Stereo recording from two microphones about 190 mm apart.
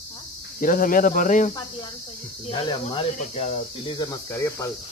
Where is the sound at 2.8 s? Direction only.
35° left (ahead or behind); by 4.7 s 15° left (ahead or behind).